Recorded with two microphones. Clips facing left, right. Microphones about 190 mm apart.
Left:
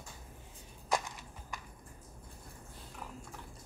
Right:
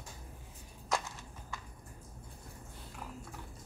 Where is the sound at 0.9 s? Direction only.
15° left (ahead or behind).